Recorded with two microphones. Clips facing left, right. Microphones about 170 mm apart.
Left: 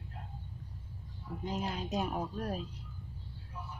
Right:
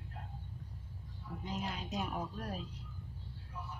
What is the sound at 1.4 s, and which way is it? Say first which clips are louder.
Speech: left 4 dB; 40° left (ahead or behind).